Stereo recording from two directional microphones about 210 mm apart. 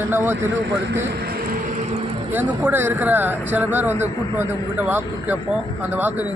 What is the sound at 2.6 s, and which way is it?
A man's voice, 10° right (ahead or behind).